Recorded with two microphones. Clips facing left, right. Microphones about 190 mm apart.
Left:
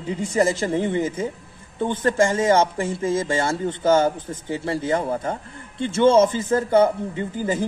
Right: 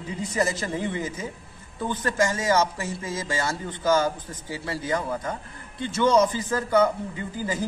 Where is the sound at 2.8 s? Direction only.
50° left (ahead or behind).